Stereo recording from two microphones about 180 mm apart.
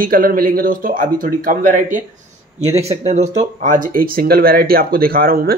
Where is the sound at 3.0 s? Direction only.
40° right (ahead or behind).